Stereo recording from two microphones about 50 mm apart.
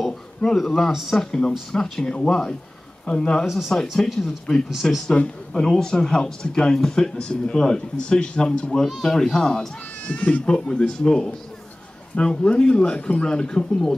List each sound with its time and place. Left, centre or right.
0.7 s a man's voice: centre
3.4 s a man's voice: centre
8.8 s a man's voice: centre